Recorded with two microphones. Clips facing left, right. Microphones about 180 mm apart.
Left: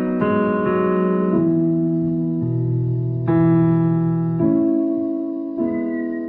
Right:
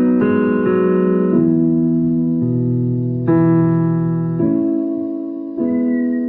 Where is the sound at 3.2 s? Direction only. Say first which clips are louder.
Right 2 dB; 50° right (ahead or behind).